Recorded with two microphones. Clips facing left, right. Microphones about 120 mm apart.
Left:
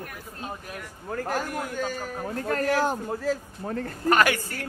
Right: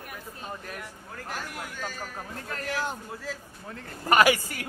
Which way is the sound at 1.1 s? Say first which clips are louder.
Left 10 dB; 45° left (ahead or behind).